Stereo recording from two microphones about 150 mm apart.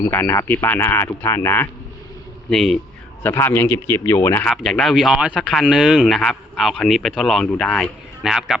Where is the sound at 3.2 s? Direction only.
15° left (ahead or behind).